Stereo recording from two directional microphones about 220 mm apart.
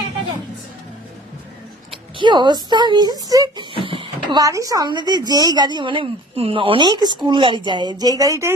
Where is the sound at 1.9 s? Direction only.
20° right (ahead or behind).